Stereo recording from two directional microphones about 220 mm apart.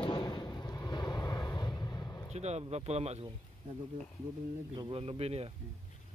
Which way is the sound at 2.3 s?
30° right (ahead or behind).